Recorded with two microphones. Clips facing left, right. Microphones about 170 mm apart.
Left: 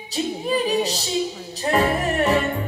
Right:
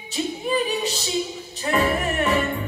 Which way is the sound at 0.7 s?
35° left (ahead or behind).